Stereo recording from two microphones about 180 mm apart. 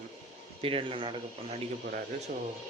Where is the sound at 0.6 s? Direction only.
30° right (ahead or behind).